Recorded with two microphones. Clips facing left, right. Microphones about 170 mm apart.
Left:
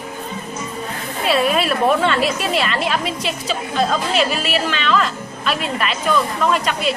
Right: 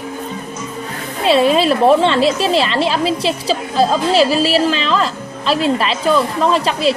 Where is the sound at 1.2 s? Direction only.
25° right (ahead or behind).